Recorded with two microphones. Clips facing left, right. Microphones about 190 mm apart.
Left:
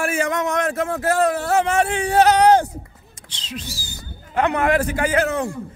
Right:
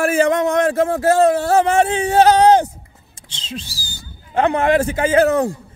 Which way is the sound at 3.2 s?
25° right (ahead or behind).